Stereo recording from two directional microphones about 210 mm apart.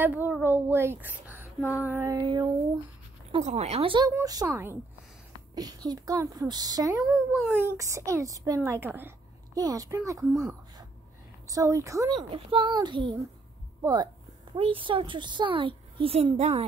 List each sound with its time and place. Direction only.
0.0 s a woman's voice: 10° right (ahead or behind)
1.6 s female singing: 10° left (ahead or behind)
1.9 s speech: 15° right (ahead or behind)
3.3 s a child's voice: 30° right (ahead or behind)
7.0 s speech: 5° right (ahead or behind)
11.4 s a child's voice: 15° right (ahead or behind)
14.5 s a child's voice: 25° right (ahead or behind)